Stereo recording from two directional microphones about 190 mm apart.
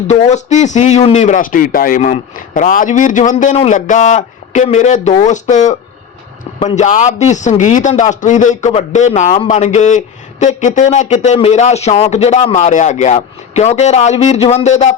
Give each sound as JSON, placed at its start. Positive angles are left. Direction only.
{"t": 0.1, "sound": "a man's voice", "side_deg": 35}
{"t": 6.7, "sound": "a man's voice", "side_deg": 40}